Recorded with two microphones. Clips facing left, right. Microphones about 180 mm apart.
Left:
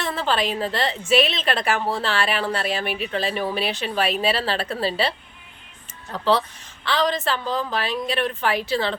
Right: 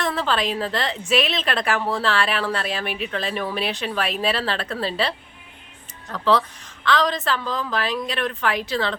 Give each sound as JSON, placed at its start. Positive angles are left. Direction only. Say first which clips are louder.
{"t": 0.2, "sound": "a woman's voice", "louder": "even", "side_deg": 0}
{"t": 6.1, "sound": "speech", "louder": "right 1 dB", "side_deg": 25}
{"t": 7.0, "sound": "a woman's voice", "louder": "left 1 dB", "side_deg": 0}
{"t": 7.4, "sound": "speech", "louder": "left 2 dB", "side_deg": 30}
{"t": 7.7, "sound": "a woman's voice", "louder": "right 1 dB", "side_deg": 0}
{"t": 8.2, "sound": "speech", "louder": "left 1 dB", "side_deg": 30}
{"t": 8.5, "sound": "a woman's voice", "louder": "left 1 dB", "side_deg": 5}